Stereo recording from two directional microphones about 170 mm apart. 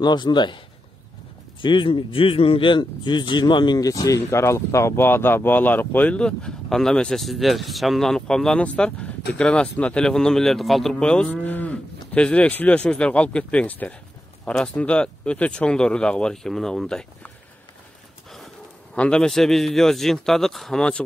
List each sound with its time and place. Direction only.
0.0 s speech: 25° left (ahead or behind)
1.6 s speech: 30° left (ahead or behind); by 17.3 s 5° left (ahead or behind)
18.9 s speech: 5° left (ahead or behind)